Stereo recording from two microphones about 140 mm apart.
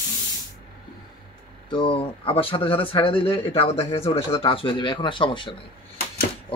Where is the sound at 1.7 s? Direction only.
40° left (ahead or behind).